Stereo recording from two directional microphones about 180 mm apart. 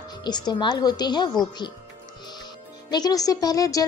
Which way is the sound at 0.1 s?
25° left (ahead or behind).